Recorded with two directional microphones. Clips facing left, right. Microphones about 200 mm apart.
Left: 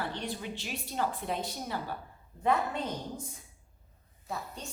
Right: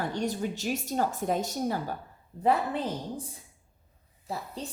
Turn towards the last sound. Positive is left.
turn(degrees=-30)  # may be behind; listen again after turning